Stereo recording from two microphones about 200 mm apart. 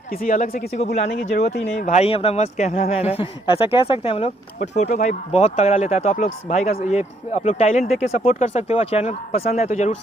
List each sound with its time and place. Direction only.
0.1 s speech: 40° left (ahead or behind)
1.8 s speech: 35° left (ahead or behind)
4.6 s speech: 35° left (ahead or behind)